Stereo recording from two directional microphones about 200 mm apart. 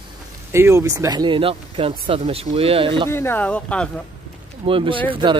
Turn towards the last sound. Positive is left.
turn(degrees=-25)  # may be behind; listen again after turning